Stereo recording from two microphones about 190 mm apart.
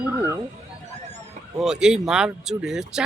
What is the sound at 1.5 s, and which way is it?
Speech, 5° right (ahead or behind).